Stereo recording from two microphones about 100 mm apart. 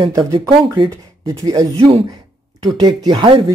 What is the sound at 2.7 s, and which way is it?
Speech, 40° right (ahead or behind).